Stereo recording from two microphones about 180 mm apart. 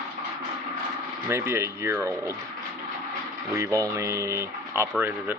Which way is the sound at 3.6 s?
20° right (ahead or behind).